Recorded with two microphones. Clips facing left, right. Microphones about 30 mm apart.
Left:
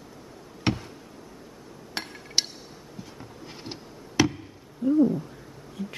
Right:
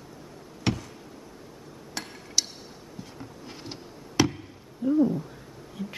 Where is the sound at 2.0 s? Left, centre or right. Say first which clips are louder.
Left 3 dB; left.